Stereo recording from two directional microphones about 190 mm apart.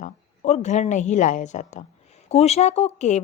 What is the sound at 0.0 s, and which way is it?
A woman's voice, 35° left (ahead or behind).